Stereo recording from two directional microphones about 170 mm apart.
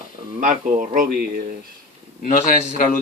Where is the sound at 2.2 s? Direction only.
50° left (ahead or behind).